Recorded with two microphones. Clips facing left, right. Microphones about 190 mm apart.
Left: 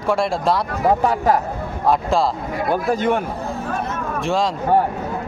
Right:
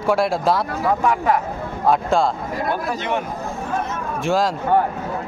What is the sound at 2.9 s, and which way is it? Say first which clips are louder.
Speech: left 5 dB; 50° left (ahead or behind).